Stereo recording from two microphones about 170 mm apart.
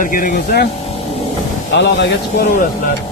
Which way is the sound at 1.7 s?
90° left.